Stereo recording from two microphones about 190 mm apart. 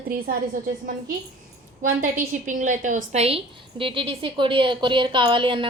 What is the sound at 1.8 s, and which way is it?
A woman's voice, 45° right (ahead or behind).